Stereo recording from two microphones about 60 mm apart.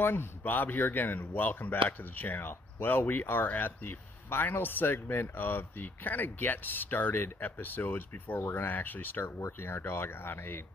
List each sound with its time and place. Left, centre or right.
0.0 s speech: left
9.2 s speech: left